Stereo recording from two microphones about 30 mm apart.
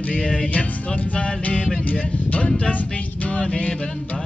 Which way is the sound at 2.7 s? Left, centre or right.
Left.